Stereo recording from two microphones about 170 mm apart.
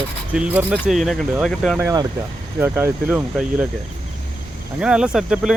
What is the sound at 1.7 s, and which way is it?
Speech, 20° right (ahead or behind).